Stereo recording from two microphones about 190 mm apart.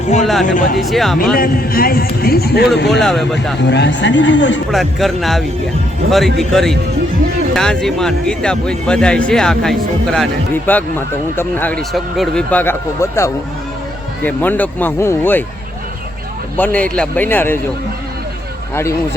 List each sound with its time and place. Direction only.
0.4 s a man's voice: 45° left (ahead or behind)
0.8 s speech: centre (ahead or behind)
1.4 s a man's voice: 50° left (ahead or behind)
3.0 s speech: centre (ahead or behind)
3.7 s speech: 65° left (ahead or behind)
4.7 s speech: centre (ahead or behind)
16.6 s speech: 10° left (ahead or behind)
18.7 s speech: 15° left (ahead or behind)